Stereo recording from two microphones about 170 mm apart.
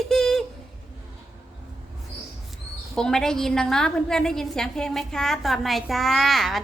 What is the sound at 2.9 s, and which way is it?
A woman's voice, 5° left (ahead or behind).